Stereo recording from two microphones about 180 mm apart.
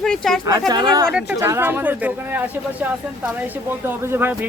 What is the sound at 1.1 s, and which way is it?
Speech, 10° right (ahead or behind).